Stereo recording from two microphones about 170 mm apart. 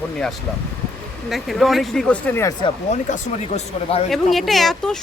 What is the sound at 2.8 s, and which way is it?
Speech, 40° left (ahead or behind).